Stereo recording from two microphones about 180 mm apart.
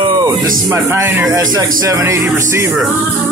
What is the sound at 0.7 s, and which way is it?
Speech, 15° right (ahead or behind).